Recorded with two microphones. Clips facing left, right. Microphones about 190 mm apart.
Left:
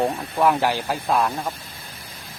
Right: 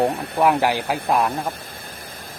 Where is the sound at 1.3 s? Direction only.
55° right (ahead or behind).